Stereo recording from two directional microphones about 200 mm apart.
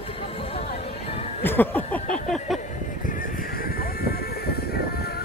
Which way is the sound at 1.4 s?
10° left (ahead or behind).